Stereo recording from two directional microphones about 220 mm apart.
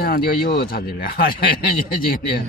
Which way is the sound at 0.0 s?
45° left (ahead or behind).